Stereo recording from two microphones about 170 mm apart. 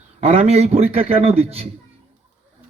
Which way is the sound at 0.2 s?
35° right (ahead or behind).